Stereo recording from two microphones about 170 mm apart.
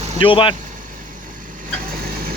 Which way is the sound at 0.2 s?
30° left (ahead or behind).